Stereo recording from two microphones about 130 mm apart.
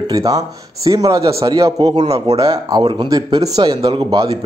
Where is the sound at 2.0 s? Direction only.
55° right (ahead or behind).